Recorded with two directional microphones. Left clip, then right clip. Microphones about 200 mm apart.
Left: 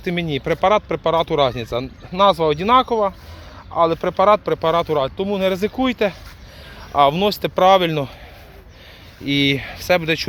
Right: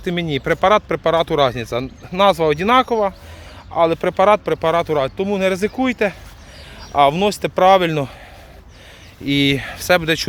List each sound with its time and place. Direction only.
0.0 s speech: 5° right (ahead or behind)
9.2 s speech: 10° right (ahead or behind)